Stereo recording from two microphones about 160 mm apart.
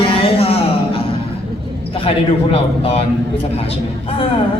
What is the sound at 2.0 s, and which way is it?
Speech, 35° left (ahead or behind).